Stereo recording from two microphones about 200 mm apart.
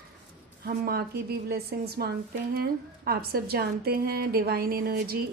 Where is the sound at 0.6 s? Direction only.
50° right (ahead or behind).